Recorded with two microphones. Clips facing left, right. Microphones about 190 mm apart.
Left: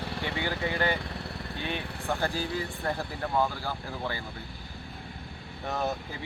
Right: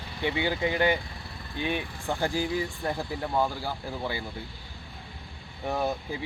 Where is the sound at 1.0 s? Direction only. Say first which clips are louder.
Left 6 dB; 70° left (ahead or behind).